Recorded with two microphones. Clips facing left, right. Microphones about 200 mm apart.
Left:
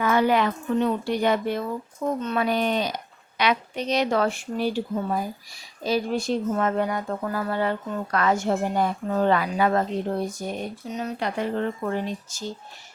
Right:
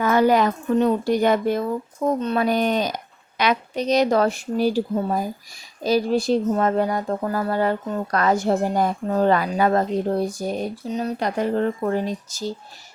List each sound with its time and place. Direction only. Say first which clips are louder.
0.0 s speech: right 4 dB; 40° right (ahead or behind)